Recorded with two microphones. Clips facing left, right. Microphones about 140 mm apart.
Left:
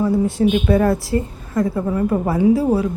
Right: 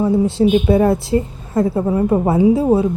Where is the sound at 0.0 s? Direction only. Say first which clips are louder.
Right 2 dB; 25° right (ahead or behind).